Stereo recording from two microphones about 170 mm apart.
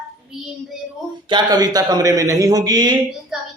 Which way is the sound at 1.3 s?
25° right (ahead or behind).